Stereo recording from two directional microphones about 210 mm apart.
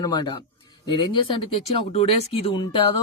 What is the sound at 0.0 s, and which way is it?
Speech, 20° left (ahead or behind).